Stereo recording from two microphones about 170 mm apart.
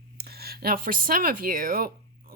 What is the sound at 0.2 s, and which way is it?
Speech, 70° right (ahead or behind).